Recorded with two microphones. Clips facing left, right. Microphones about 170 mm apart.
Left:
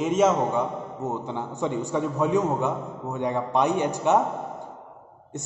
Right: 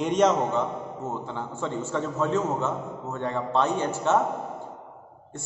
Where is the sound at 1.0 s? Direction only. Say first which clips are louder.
Left 5 dB; 20° left (ahead or behind).